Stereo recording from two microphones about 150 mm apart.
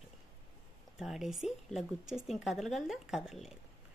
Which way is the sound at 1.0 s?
5° right (ahead or behind).